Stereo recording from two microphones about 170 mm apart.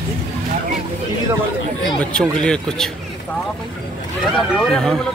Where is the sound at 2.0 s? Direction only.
5° left (ahead or behind).